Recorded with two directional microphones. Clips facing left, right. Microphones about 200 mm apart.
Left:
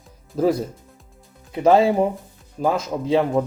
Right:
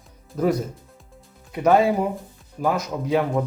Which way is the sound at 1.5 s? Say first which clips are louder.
Left 2 dB; 25° left (ahead or behind).